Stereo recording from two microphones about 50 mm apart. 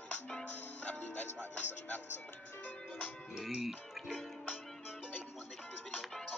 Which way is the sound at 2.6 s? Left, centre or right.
Left.